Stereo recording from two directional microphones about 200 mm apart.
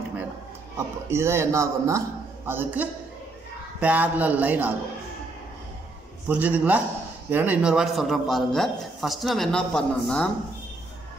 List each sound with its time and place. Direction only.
1.1 s a man's voice: 15° right (ahead or behind)
6.2 s a man's voice: 10° right (ahead or behind)